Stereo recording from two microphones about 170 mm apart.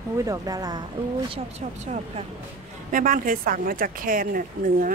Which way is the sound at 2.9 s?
55° right (ahead or behind).